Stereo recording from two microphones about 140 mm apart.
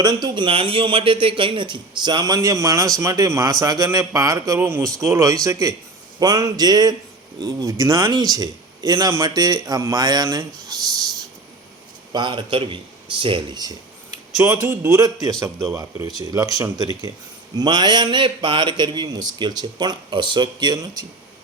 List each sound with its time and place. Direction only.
0.0 s speech: 30° right (ahead or behind)
12.1 s a man's voice: 35° right (ahead or behind)